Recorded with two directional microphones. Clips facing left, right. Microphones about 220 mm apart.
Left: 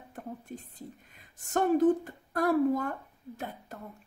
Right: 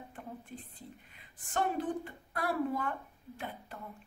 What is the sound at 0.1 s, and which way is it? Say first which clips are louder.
Speech: left 8 dB; 45° left (ahead or behind).